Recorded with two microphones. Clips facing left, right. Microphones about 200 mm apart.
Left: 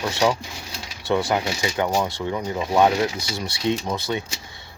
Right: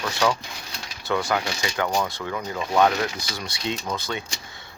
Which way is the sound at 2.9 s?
25° left (ahead or behind).